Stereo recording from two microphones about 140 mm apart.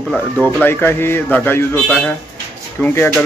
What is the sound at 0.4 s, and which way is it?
Speech, 15° left (ahead or behind).